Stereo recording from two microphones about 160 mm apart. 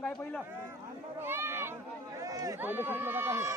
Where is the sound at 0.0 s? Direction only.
5° left (ahead or behind).